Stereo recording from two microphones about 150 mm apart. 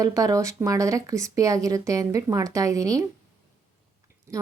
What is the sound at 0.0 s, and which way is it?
Speech, 25° right (ahead or behind).